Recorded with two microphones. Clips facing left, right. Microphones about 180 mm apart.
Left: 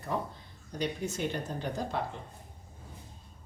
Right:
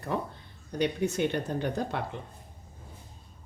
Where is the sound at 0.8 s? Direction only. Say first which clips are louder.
Right 6 dB; 65° right (ahead or behind).